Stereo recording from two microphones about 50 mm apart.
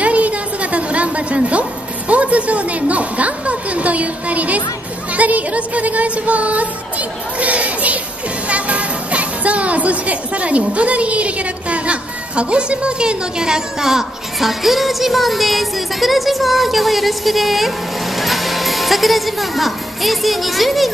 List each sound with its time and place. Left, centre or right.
0.0 s a sound: right
5.1 s music: right
8.5 s speech: right; by 20.9 s centre